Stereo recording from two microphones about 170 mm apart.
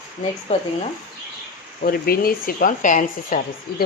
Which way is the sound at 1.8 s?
60° left (ahead or behind).